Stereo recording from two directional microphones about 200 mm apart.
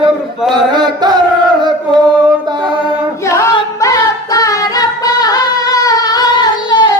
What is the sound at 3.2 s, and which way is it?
Singing, 15° left (ahead or behind).